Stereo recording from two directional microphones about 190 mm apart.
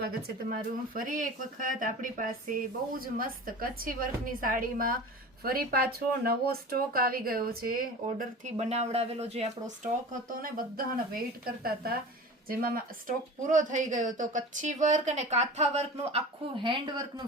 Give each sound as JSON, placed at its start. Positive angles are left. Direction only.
{"t": 0.9, "sound": "a woman's voice", "side_deg": -45}